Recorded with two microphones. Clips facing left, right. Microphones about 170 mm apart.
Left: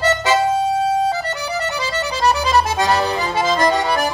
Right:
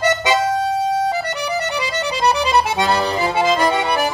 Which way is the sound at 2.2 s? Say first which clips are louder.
Even; 15° right (ahead or behind).